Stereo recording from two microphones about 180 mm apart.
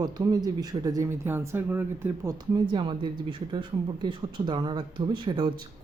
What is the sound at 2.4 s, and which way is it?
Speech, 25° right (ahead or behind).